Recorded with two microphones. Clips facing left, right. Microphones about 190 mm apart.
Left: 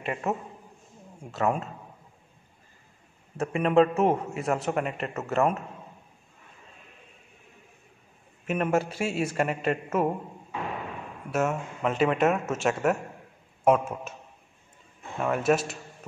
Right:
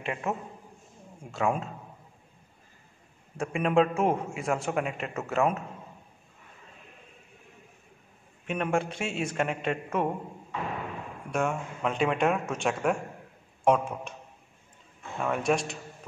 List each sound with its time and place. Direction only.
0.0 s a man's voice: centre (ahead or behind)
3.3 s a man's voice: centre (ahead or behind)
8.5 s a man's voice: 5° left (ahead or behind)
11.2 s a man's voice: 5° left (ahead or behind)
15.1 s a man's voice: 5° left (ahead or behind)